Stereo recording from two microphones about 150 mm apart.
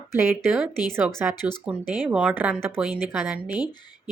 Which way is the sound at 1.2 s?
10° right (ahead or behind).